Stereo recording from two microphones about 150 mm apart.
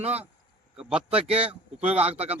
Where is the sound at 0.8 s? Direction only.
5° right (ahead or behind).